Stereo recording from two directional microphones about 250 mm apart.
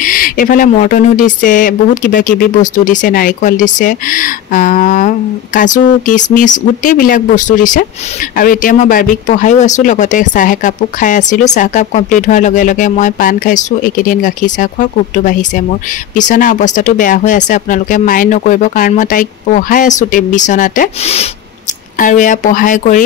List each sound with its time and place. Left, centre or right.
0.0 s speech: left